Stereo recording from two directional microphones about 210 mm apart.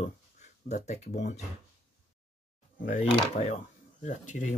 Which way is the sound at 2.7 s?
40° left (ahead or behind).